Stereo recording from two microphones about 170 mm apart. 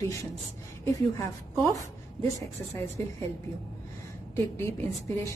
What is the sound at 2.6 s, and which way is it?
Speech, 15° left (ahead or behind).